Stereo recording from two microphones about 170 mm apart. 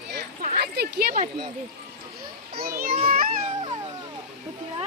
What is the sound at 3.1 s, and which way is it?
Children playing, 55° right (ahead or behind).